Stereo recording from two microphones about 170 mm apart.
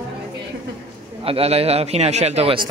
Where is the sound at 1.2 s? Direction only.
35° right (ahead or behind).